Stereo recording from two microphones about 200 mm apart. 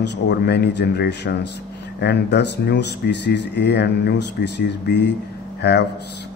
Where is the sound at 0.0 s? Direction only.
60° left (ahead or behind).